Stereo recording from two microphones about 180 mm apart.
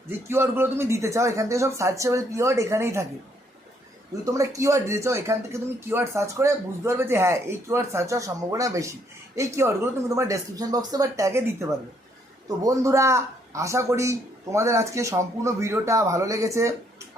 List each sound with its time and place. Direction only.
0.3 s speech: 15° right (ahead or behind)
4.3 s speech: 20° right (ahead or behind)